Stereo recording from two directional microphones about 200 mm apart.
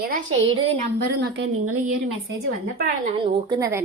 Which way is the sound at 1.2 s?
70° right (ahead or behind).